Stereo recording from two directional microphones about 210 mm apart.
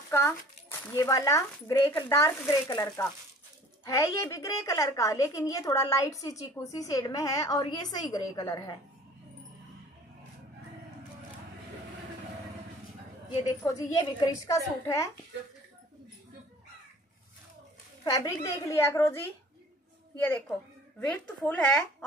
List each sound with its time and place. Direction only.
0.1 s a woman's voice: 10° left (ahead or behind)
13.7 s a woman's voice: 15° left (ahead or behind)
18.0 s a woman's voice: 15° left (ahead or behind)